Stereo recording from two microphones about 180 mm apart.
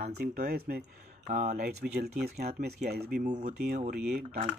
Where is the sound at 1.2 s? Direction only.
40° right (ahead or behind).